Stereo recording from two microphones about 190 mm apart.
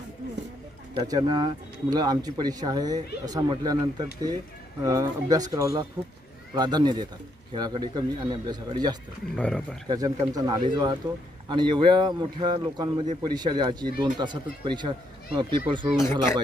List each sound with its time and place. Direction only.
0.9 s speech: 20° right (ahead or behind)
9.3 s speech: 5° left (ahead or behind)
9.9 s speech: 20° right (ahead or behind)